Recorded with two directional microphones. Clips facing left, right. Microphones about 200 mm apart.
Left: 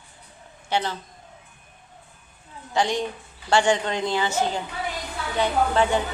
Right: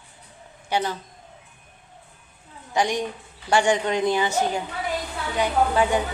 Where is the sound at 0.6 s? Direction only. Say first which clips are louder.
Right 1 dB; 10° right (ahead or behind).